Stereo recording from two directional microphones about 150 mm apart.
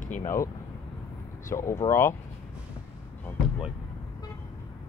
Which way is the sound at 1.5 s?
20° left (ahead or behind).